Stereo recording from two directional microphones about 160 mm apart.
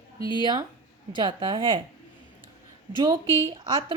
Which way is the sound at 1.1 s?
30° right (ahead or behind).